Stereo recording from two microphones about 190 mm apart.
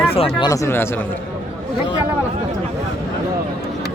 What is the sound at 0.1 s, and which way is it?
Speech, 30° left (ahead or behind).